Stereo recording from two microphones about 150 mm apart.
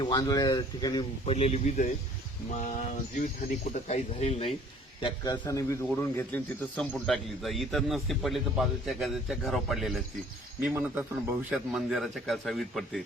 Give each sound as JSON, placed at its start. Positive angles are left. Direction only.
{"t": 0.0, "sound": "speech", "side_deg": 25}
{"t": 1.2, "sound": "speech", "side_deg": 45}
{"t": 3.2, "sound": "speech", "side_deg": 50}
{"t": 4.9, "sound": "speech", "side_deg": 30}
{"t": 7.0, "sound": "a man's voice", "side_deg": 0}